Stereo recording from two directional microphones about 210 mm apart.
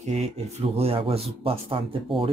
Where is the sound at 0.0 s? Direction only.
30° right (ahead or behind).